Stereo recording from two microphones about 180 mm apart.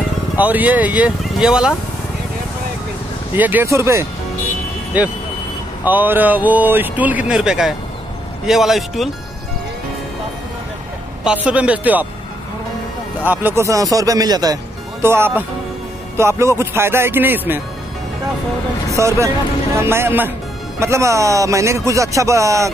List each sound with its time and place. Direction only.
0.4 s speech: 10° right (ahead or behind)
3.3 s speech: 10° right (ahead or behind)
5.9 s a man's voice: 10° right (ahead or behind)
11.4 s speech: 5° right (ahead or behind)
13.2 s speech: 10° right (ahead or behind)
18.9 s speech: 15° right (ahead or behind)